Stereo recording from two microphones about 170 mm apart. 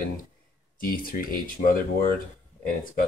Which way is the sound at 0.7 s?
55° left (ahead or behind).